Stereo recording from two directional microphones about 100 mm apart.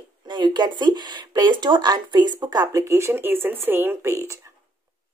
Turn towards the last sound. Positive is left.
turn(degrees=-25)  # may be behind; listen again after turning